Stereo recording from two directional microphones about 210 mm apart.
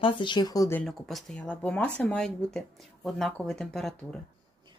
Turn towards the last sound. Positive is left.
turn(degrees=5)  # may be behind; listen again after turning